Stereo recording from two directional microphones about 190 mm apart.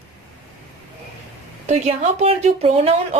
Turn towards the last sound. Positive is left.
turn(degrees=-30)  # may be behind; listen again after turning